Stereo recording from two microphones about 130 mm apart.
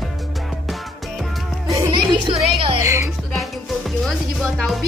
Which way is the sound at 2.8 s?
25° right (ahead or behind).